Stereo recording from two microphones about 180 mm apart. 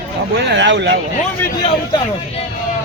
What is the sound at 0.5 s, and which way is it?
Speech, 80° right.